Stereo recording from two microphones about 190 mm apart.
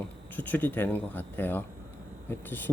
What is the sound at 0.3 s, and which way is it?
Speech, 10° left (ahead or behind).